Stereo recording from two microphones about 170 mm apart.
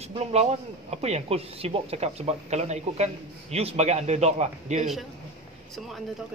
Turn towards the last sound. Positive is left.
turn(degrees=0)  # may be behind; listen again after turning